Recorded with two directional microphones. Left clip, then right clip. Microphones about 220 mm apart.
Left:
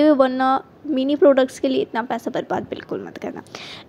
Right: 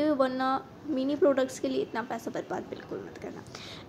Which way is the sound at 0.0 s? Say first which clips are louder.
Left 11 dB; 35° left (ahead or behind).